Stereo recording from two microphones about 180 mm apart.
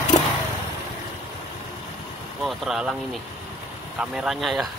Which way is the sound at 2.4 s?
Centre (ahead or behind).